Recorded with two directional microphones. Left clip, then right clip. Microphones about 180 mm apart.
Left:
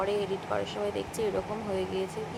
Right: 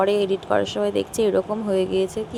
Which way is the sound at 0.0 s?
40° right (ahead or behind).